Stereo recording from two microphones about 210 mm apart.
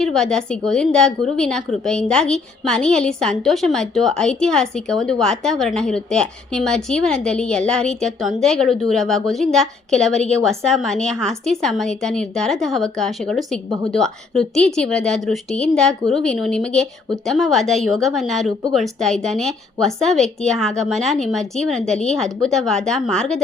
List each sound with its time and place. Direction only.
0.0 s a woman's voice: centre (ahead or behind)
13.7 s a woman's voice: 15° right (ahead or behind)
13.9 s a woman's voice: centre (ahead or behind)